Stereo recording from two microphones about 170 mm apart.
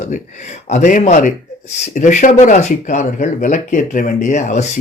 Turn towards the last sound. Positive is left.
turn(degrees=45)  # may be behind; listen again after turning